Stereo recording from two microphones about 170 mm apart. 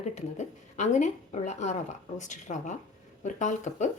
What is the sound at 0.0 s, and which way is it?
A woman's voice, 40° left (ahead or behind).